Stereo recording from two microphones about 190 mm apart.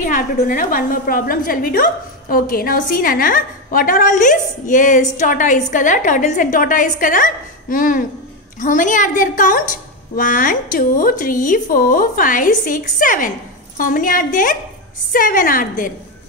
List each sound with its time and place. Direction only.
0.0 s a woman's voice: 45° left (ahead or behind)